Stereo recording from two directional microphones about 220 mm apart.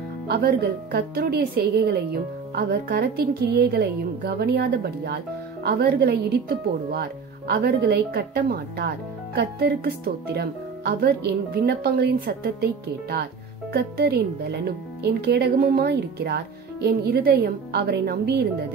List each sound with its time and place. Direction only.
0.3 s a woman's voice: 45° right (ahead or behind)
13.7 s a woman's voice: 45° right (ahead or behind)